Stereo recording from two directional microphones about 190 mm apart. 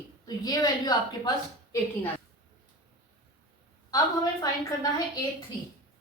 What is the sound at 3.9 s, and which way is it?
Speech, 20° left (ahead or behind).